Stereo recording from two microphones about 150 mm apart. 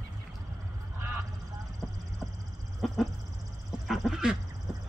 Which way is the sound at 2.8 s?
Centre (ahead or behind).